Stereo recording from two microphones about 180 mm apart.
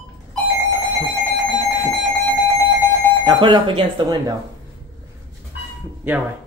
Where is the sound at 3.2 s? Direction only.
25° right (ahead or behind).